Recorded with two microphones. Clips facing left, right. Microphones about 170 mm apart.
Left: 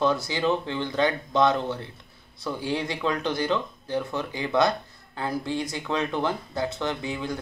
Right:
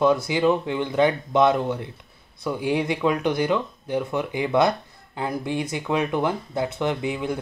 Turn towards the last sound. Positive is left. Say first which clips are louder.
# right 4 dB
turn(degrees=-15)  # may be behind; listen again after turning